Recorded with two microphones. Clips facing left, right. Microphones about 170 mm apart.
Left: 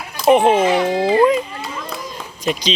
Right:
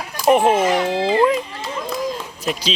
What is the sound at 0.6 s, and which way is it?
Speech, 10° left (ahead or behind).